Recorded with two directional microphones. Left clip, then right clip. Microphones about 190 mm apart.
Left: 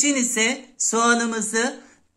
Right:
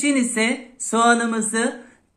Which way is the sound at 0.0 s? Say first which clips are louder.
Right 1 dB; 20° left (ahead or behind).